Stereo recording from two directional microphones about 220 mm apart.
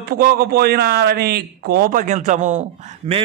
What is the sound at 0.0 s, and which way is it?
A man's voice, 45° right (ahead or behind).